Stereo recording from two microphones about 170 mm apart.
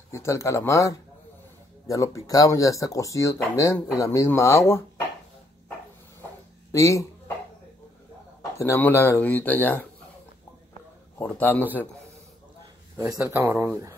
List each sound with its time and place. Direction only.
0.1 s speech: 15° left (ahead or behind)
6.7 s speech: 20° left (ahead or behind)
8.4 s speech: 15° left (ahead or behind)
11.1 s speech: 10° left (ahead or behind)
12.9 s speech: 20° right (ahead or behind)